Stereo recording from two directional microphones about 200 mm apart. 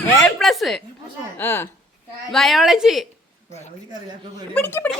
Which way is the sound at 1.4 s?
10° left (ahead or behind).